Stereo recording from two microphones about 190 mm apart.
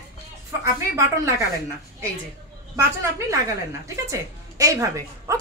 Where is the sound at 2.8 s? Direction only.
15° right (ahead or behind).